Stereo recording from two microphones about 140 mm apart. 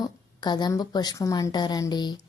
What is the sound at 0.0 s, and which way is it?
A woman's voice, 30° left (ahead or behind).